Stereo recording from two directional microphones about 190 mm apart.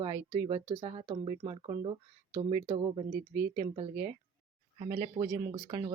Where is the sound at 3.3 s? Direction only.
15° right (ahead or behind).